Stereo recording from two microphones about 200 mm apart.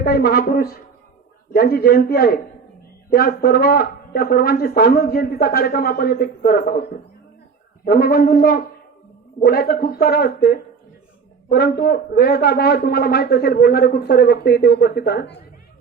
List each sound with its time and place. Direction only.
0.0 s a man's voice: 50° left (ahead or behind)
7.9 s a man's voice: 50° left (ahead or behind)